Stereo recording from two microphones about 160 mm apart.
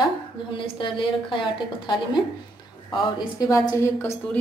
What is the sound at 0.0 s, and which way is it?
A woman's voice, 30° left (ahead or behind).